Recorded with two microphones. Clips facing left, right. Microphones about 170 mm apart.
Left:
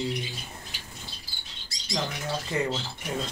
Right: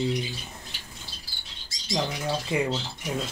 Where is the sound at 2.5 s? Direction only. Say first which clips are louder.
Right 2 dB; 10° right (ahead or behind).